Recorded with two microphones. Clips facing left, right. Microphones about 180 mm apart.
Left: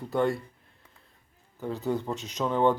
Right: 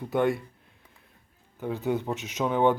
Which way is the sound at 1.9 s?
20° right (ahead or behind).